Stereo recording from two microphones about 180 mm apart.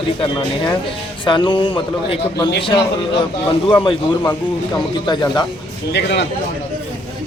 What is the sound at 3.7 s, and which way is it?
Speech, 30° left (ahead or behind).